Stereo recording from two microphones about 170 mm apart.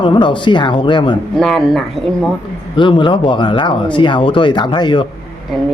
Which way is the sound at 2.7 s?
30° left (ahead or behind).